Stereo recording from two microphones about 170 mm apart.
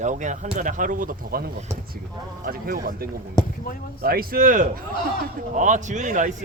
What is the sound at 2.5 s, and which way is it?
Speech, 60° right (ahead or behind).